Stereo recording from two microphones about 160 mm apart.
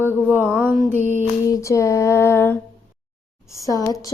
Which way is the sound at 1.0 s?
50° right (ahead or behind).